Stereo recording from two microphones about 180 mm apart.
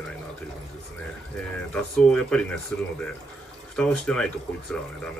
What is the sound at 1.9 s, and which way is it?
Speech, 5° left (ahead or behind).